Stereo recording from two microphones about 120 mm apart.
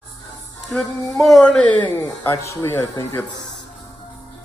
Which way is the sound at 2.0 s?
25° left (ahead or behind).